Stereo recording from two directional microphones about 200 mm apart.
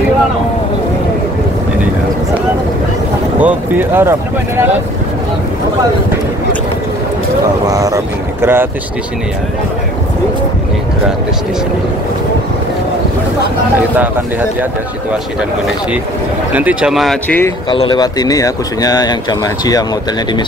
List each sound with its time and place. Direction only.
3.3 s speech: 10° right (ahead or behind)
7.6 s speech: 15° right (ahead or behind)
16.5 s speech: 5° right (ahead or behind)
17.6 s speech: 25° left (ahead or behind)